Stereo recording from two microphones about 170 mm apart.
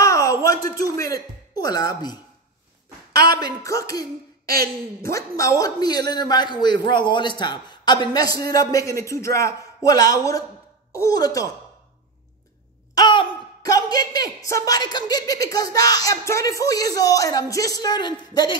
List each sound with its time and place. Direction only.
0.0 s a sound: 20° left (ahead or behind)
0.9 s speech: 20° left (ahead or behind)
3.1 s a sound: 65° right (ahead or behind)
3.3 s a man's voice: 20° left (ahead or behind)
4.5 s speech: 65° right (ahead or behind)
5.1 s a man's voice: 20° left (ahead or behind)
12.9 s a woman's voice: 25° left (ahead or behind)